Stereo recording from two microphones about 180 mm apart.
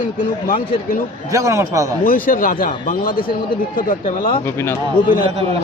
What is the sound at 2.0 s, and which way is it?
Speech, 50° left (ahead or behind).